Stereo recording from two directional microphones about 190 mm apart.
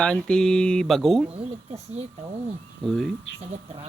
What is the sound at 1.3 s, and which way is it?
Speech, 30° right (ahead or behind).